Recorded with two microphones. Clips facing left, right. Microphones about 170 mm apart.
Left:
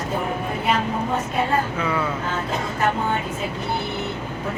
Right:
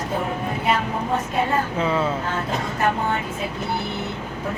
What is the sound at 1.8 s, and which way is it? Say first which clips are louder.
Speech: right 2 dB; 25° right (ahead or behind).